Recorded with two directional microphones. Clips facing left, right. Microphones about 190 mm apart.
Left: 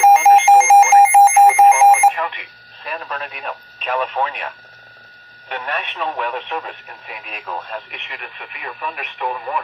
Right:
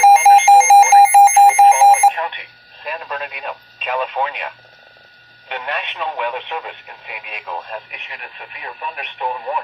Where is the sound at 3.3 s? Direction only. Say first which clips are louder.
Even; 15° right (ahead or behind).